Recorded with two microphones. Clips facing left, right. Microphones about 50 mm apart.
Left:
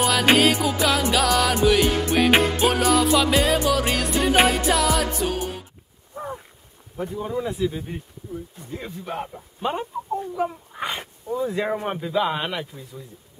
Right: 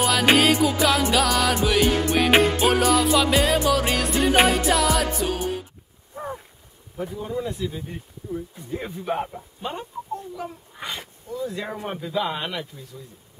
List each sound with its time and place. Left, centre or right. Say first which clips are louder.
0.0 s music: even; centre
6.1 s a sound: even; centre
7.2 s speech: left 4 dB; centre
8.7 s speech: right 4 dB; centre
9.6 s speech: left 6 dB; centre
11.9 s speech: left 3 dB; centre